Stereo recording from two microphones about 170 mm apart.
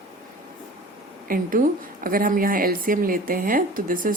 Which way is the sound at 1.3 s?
55° right (ahead or behind).